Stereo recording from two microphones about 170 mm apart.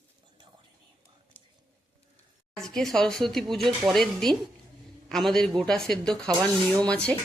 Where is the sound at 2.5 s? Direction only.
5° left (ahead or behind).